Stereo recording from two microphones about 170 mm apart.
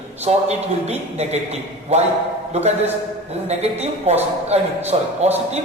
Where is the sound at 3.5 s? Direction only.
40° right (ahead or behind).